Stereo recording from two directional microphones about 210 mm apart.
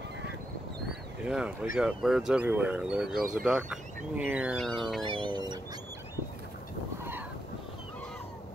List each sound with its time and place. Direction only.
1.2 s speech: 5° right (ahead or behind)
3.2 s speech: 40° right (ahead or behind)
3.4 s speech: 5° right (ahead or behind)
5.0 s a sound: 25° right (ahead or behind)